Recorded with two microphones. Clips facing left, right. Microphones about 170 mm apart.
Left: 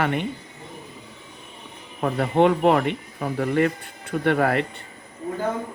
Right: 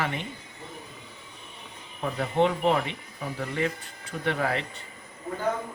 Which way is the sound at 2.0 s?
60° left (ahead or behind).